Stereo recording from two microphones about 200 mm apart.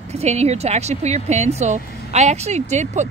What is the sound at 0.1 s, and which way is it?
Speech, 30° right (ahead or behind).